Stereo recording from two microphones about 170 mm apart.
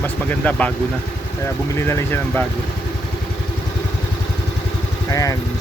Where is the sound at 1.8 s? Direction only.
15° left (ahead or behind).